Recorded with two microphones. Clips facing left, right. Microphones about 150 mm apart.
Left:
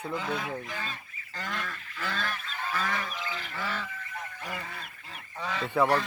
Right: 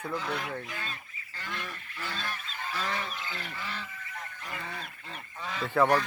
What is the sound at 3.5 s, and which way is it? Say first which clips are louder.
Bird: left 5 dB; 85° left.